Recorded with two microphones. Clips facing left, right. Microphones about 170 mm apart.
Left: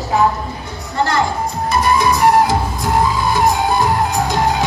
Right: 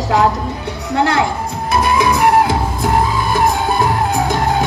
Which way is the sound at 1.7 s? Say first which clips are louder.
Right 1 dB; 60° right (ahead or behind).